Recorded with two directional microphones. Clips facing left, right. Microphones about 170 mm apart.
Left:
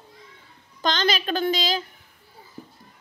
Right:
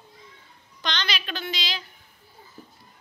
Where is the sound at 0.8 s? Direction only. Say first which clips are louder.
Left 8 dB; 45° left (ahead or behind).